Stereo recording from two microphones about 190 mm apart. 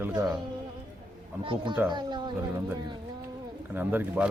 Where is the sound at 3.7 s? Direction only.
10° right (ahead or behind).